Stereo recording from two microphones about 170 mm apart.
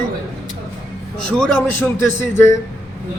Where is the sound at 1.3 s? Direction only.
5° left (ahead or behind).